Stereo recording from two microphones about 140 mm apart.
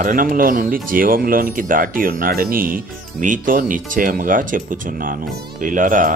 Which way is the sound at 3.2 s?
70° right (ahead or behind).